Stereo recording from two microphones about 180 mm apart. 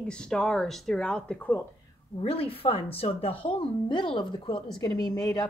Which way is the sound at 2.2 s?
30° left (ahead or behind).